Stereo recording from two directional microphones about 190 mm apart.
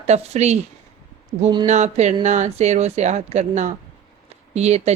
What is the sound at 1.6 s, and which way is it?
A woman's voice, 35° right (ahead or behind).